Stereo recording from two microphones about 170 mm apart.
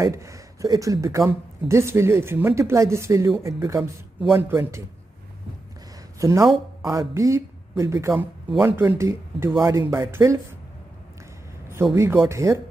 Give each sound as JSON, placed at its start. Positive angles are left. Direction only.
{"t": 0.0, "sound": "speech", "side_deg": -15}
{"t": 6.1, "sound": "speech", "side_deg": -15}
{"t": 8.5, "sound": "speech", "side_deg": 0}
{"t": 8.7, "sound": "speech", "side_deg": -15}
{"t": 11.9, "sound": "speech", "side_deg": -15}